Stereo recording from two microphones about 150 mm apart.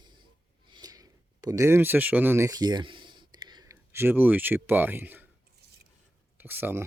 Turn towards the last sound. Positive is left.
turn(degrees=-15)  # may be behind; listen again after turning